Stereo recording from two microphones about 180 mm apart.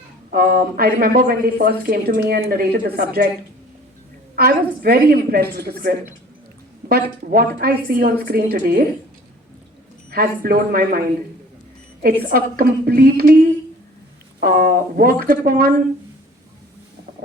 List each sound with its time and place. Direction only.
0.3 s speech: 55° right (ahead or behind)
4.4 s speech: 55° right (ahead or behind)
10.1 s speech: 55° right (ahead or behind)
12.3 s speech: 55° right (ahead or behind)
14.4 s speech: 55° right (ahead or behind)